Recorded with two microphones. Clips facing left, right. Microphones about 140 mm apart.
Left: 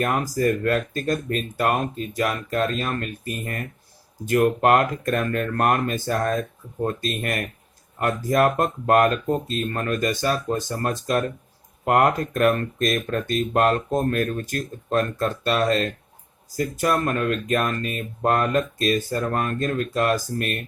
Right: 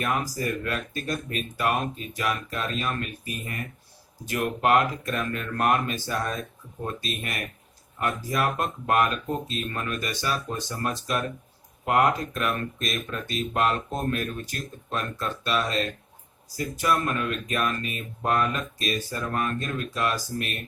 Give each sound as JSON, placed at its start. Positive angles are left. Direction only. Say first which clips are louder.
{"t": 0.0, "sound": "speech", "louder": "left 6 dB", "side_deg": 45}